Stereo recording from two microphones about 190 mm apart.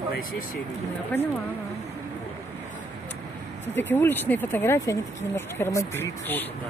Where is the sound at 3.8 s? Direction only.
10° left (ahead or behind).